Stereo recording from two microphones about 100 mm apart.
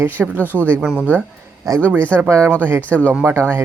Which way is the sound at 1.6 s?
35° right (ahead or behind).